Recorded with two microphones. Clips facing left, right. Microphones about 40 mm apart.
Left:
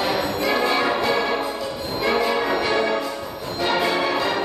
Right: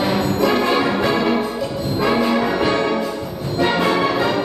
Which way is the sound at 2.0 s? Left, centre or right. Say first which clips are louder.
Right 3 dB; centre.